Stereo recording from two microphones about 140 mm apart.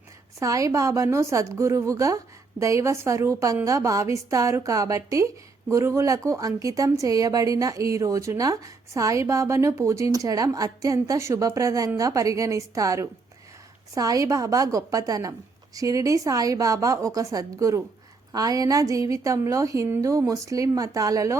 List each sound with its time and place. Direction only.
0.3 s a woman's voice: 25° right (ahead or behind)